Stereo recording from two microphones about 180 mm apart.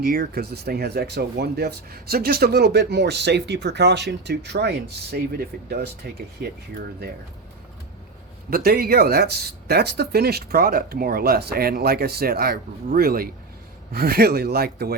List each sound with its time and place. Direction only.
0.0 s speech: 55° right (ahead or behind)
8.4 s speech: 55° right (ahead or behind)